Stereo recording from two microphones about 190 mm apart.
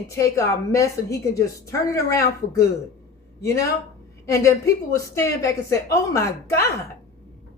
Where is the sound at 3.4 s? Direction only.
15° left (ahead or behind).